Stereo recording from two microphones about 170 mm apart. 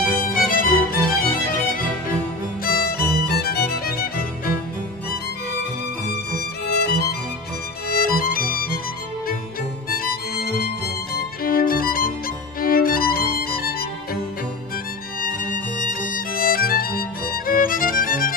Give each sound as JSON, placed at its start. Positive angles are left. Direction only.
{"t": 0.3, "sound": "music", "side_deg": 55}
{"t": 2.6, "sound": "music", "side_deg": 60}
{"t": 6.7, "sound": "music", "side_deg": 70}
{"t": 7.9, "sound": "music", "side_deg": 60}
{"t": 9.8, "sound": "music", "side_deg": 60}
{"t": 11.4, "sound": "music", "side_deg": 60}
{"t": 15.2, "sound": "music", "side_deg": 50}